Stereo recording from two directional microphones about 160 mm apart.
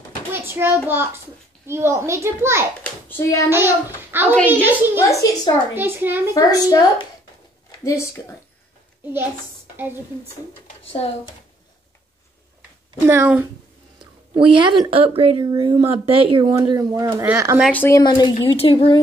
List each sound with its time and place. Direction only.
0.3 s a child's voice: 15° right (ahead or behind)
2.8 s a child's voice: 15° left (ahead or behind)
4.1 s a sound: 15° right (ahead or behind)
4.5 s a child's voice: 10° right (ahead or behind)
5.0 s a woman's voice: 20° left (ahead or behind)
5.8 s a child's voice: 15° right (ahead or behind)
6.3 s a woman's voice: 20° left (ahead or behind)
7.8 s a woman's voice: 20° left (ahead or behind)
10.9 s speech: 35° left (ahead or behind)
13.1 s a child's voice: 15° right (ahead or behind)
14.3 s a woman's voice: 30° right (ahead or behind)
17.6 s a woman's voice: 15° left (ahead or behind)
18.0 s a woman's voice: 30° left (ahead or behind)